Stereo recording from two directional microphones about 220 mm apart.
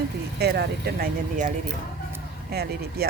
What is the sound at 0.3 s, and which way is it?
Speech, 50° right (ahead or behind).